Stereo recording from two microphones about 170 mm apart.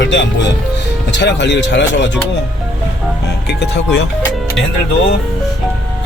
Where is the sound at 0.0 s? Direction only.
90° left.